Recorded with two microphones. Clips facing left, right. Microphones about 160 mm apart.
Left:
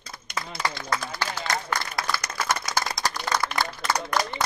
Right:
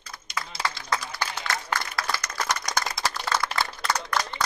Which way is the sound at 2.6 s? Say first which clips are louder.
Left 1 dB; centre (ahead or behind).